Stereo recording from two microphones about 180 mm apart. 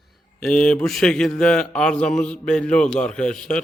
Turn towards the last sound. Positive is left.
turn(degrees=5)  # may be behind; listen again after turning